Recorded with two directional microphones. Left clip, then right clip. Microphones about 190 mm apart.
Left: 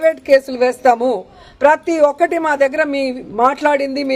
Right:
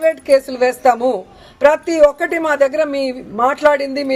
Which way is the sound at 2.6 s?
10° left (ahead or behind).